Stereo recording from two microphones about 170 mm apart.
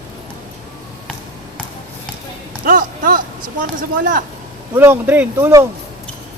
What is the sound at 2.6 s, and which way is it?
Speech, 50° right (ahead or behind).